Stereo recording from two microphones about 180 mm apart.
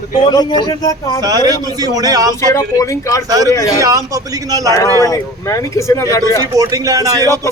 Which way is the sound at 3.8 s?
20° right (ahead or behind).